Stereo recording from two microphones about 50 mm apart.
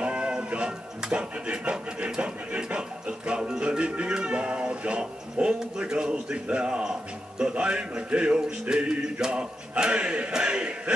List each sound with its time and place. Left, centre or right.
0.0 s music: right